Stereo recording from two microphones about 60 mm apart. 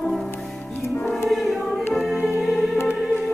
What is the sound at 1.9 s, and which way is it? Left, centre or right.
Music, centre.